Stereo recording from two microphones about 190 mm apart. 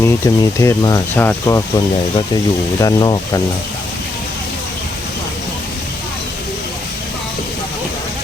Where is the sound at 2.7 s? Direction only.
20° left (ahead or behind).